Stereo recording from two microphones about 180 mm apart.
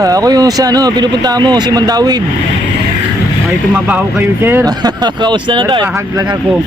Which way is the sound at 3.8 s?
10° right (ahead or behind).